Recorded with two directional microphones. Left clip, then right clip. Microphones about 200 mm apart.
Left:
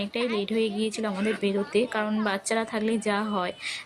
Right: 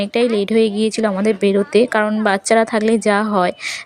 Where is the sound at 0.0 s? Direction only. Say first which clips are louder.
Right 11 dB; 30° right (ahead or behind).